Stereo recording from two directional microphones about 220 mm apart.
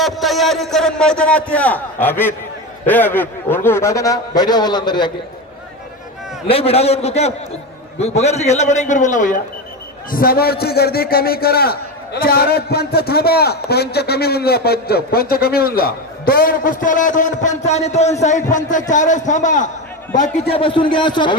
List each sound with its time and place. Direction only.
0.0 s a man's voice: centre (ahead or behind); by 5.1 s 20° left (ahead or behind)
6.5 s a man's voice: 25° left (ahead or behind)